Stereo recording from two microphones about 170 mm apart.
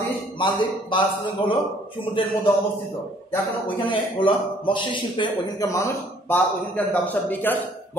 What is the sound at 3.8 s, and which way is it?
A man's voice, 30° left (ahead or behind).